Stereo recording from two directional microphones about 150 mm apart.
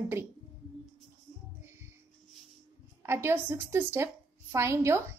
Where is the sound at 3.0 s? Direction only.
15° right (ahead or behind).